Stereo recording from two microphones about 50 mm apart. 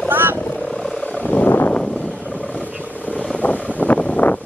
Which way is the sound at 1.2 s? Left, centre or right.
Left.